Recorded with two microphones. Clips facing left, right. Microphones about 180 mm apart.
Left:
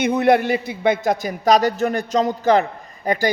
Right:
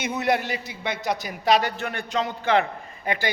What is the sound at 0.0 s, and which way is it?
A man's voice, 55° left (ahead or behind).